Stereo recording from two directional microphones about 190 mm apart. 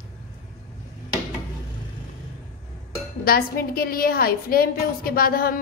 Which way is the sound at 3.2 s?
50° left (ahead or behind).